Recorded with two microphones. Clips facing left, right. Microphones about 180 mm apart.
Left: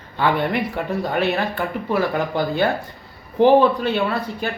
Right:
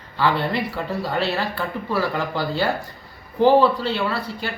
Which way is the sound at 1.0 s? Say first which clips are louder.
Left 3 dB; 15° left (ahead or behind).